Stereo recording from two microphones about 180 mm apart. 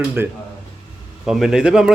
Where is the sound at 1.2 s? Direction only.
5° right (ahead or behind).